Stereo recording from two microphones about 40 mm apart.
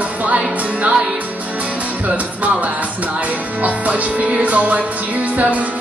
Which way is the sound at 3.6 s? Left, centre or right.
Right.